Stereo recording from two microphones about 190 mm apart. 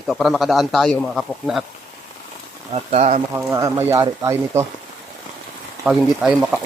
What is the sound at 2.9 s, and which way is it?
Speech, 35° right (ahead or behind).